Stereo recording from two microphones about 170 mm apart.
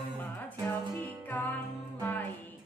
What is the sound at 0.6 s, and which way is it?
Music, 10° left (ahead or behind).